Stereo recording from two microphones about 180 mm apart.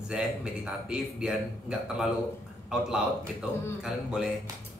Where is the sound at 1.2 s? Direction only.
5° right (ahead or behind).